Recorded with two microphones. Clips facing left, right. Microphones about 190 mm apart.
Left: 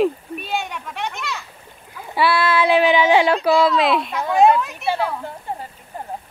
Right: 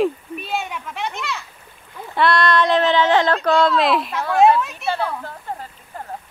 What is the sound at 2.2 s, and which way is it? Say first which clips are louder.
A child's voice: right 1 dB; 5° left (ahead or behind).